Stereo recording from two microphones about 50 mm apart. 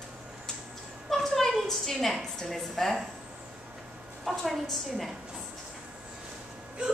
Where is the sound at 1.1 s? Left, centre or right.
Centre.